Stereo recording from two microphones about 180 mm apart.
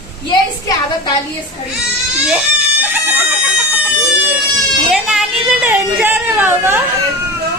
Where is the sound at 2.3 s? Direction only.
10° right (ahead or behind).